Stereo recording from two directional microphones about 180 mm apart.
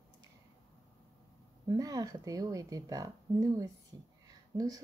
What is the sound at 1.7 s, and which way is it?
Speech, 20° right (ahead or behind).